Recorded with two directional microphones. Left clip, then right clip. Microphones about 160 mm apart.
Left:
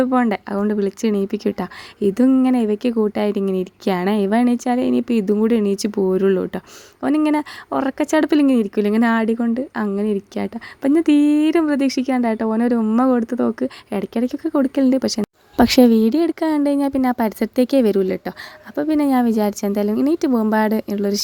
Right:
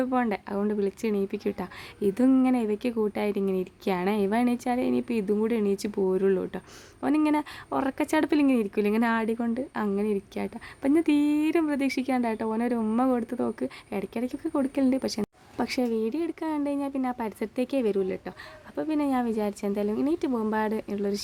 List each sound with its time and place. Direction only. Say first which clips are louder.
0.0 s speech: left 9 dB; 35° left (ahead or behind)
15.5 s speech: left 14 dB; 60° left (ahead or behind); by 21.2 s 40° left (ahead or behind)